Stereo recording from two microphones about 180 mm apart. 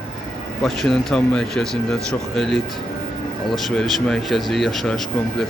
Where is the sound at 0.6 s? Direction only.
Centre (ahead or behind).